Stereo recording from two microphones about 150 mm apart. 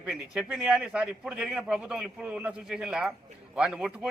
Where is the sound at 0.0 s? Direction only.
5° right (ahead or behind).